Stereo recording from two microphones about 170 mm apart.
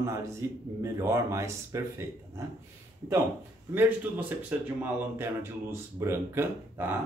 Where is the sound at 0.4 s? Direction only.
15° right (ahead or behind).